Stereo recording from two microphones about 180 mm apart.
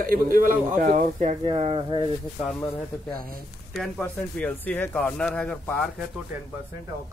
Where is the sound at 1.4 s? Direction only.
30° right (ahead or behind).